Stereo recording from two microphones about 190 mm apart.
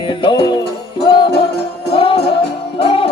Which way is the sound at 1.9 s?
30° left (ahead or behind).